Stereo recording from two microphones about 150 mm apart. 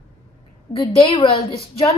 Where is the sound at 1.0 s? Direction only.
35° left (ahead or behind).